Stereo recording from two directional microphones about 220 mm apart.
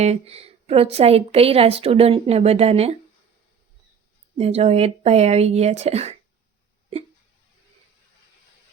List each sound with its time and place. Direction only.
0.0 s a woman's voice: 30° right (ahead or behind)
4.4 s a woman's voice: 30° right (ahead or behind)